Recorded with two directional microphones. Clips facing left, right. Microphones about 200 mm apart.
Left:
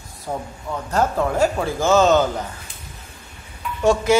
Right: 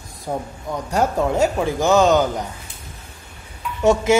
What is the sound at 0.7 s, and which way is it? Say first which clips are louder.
Speech: right 1 dB; 15° right (ahead or behind).